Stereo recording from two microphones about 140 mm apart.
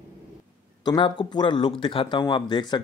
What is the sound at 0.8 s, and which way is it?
Speech, 30° left (ahead or behind).